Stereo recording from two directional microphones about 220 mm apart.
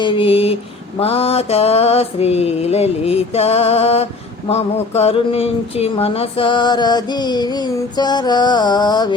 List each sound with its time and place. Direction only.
0.0 s mantra: 25° left (ahead or behind)